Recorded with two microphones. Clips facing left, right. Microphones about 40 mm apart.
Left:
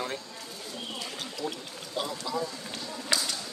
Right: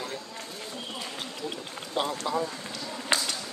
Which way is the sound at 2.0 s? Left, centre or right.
Right.